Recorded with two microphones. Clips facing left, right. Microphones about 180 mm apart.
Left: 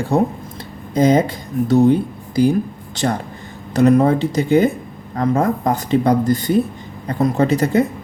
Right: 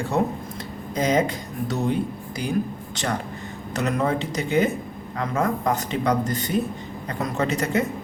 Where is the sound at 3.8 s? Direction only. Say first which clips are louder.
Left 11 dB; 35° left (ahead or behind).